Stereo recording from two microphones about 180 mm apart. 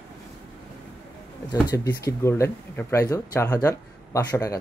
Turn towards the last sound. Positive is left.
turn(degrees=20)  # may be behind; listen again after turning